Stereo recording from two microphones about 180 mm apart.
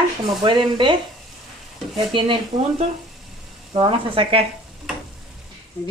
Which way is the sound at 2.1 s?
30° right (ahead or behind).